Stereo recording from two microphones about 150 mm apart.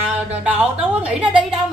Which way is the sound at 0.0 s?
10° right (ahead or behind).